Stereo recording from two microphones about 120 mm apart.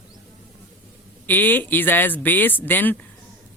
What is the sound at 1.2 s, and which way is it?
Speech, 15° left (ahead or behind).